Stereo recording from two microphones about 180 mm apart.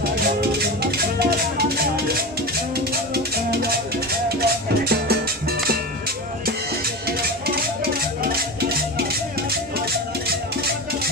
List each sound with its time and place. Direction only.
0.6 s music: 60° right (ahead or behind)
7.1 s music: 60° right (ahead or behind)